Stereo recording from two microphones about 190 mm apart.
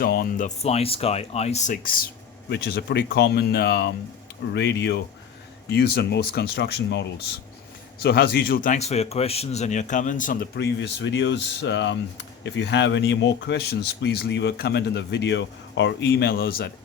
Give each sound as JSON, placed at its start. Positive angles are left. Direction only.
{"t": 0.0, "sound": "speech", "side_deg": 50}
{"t": 0.4, "sound": "speech", "side_deg": 35}
{"t": 10.6, "sound": "speech", "side_deg": 65}